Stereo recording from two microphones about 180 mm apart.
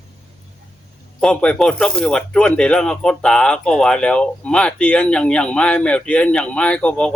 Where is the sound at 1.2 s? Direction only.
5° left (ahead or behind).